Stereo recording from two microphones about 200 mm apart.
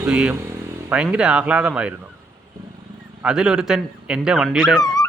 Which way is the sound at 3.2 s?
5° right (ahead or behind).